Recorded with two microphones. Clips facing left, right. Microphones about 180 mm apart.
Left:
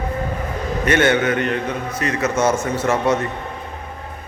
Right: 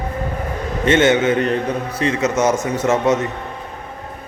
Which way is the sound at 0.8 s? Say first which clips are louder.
Right 3 dB; 20° right (ahead or behind).